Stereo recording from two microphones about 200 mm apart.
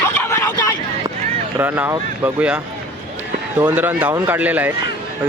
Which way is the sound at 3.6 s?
10° right (ahead or behind).